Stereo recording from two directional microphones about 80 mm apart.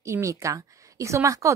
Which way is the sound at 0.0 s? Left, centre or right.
Right.